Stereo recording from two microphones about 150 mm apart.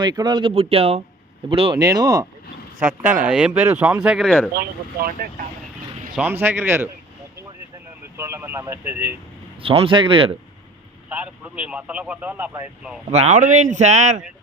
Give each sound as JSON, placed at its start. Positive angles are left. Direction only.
{"t": 0.0, "sound": "speech", "side_deg": -30}
{"t": 3.2, "sound": "speech", "side_deg": -10}
{"t": 4.5, "sound": "speech", "side_deg": -80}
{"t": 6.1, "sound": "speech", "side_deg": -15}
{"t": 8.1, "sound": "speech", "side_deg": -15}
{"t": 9.6, "sound": "speech", "side_deg": -40}
{"t": 11.1, "sound": "speech", "side_deg": -10}
{"t": 13.1, "sound": "speech", "side_deg": -45}